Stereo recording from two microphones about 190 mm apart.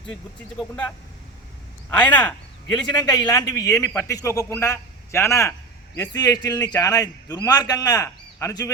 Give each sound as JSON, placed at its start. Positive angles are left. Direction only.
{"t": 2.0, "sound": "a man's voice", "side_deg": 5}
{"t": 2.7, "sound": "a man's voice", "side_deg": 20}